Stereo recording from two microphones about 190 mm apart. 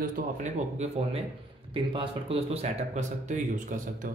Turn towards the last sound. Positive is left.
turn(degrees=-40)  # may be behind; listen again after turning